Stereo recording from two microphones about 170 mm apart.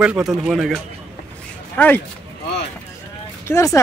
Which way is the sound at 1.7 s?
10° left (ahead or behind).